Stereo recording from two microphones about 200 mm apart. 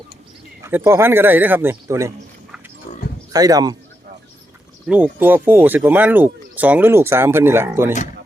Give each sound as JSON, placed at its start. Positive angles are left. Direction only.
{"t": 0.6, "sound": "speech", "side_deg": -15}
{"t": 3.3, "sound": "speech", "side_deg": -20}
{"t": 4.9, "sound": "speech", "side_deg": -10}